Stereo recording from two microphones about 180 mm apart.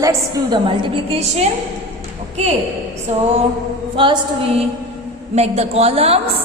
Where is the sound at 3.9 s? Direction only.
30° right (ahead or behind).